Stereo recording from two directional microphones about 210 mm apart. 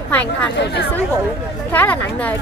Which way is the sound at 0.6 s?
55° left (ahead or behind).